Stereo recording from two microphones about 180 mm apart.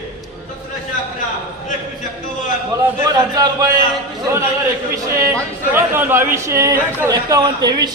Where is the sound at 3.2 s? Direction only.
20° right (ahead or behind).